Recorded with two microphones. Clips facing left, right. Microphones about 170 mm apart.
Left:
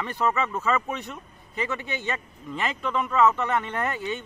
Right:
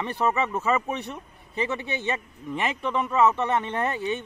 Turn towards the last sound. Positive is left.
turn(degrees=-20)  # may be behind; listen again after turning